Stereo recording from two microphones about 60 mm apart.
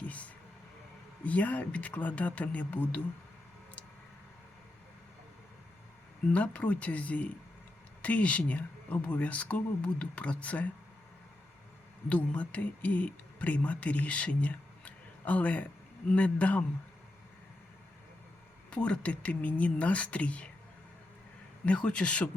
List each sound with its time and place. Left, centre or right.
0.0 s a sound: left
1.2 s speech: left
6.3 s speech: left
12.0 s speech: left
18.7 s speech: left
21.7 s speech: centre